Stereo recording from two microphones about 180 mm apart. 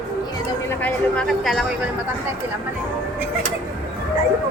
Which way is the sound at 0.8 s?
5° left (ahead or behind).